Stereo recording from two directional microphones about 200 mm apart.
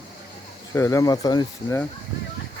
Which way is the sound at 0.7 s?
15° left (ahead or behind).